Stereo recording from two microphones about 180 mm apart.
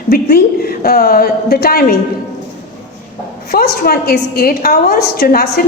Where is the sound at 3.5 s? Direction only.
60° left (ahead or behind).